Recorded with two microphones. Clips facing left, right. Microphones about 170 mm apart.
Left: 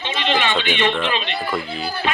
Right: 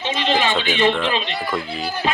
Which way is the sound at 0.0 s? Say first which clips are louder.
Right 1 dB; 40° right (ahead or behind).